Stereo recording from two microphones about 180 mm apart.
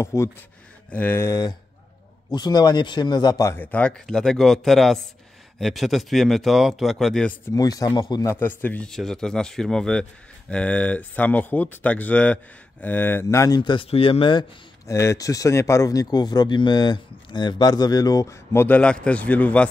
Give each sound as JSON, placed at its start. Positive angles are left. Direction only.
{"t": 0.0, "sound": "speech", "side_deg": 15}
{"t": 7.5, "sound": "speech", "side_deg": 20}
{"t": 13.6, "sound": "speech", "side_deg": 30}
{"t": 14.9, "sound": "speech", "side_deg": 15}